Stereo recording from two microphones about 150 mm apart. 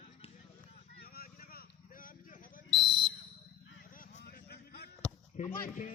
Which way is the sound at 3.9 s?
70° left (ahead or behind).